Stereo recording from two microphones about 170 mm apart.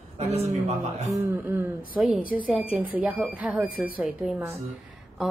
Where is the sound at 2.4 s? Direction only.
5° right (ahead or behind).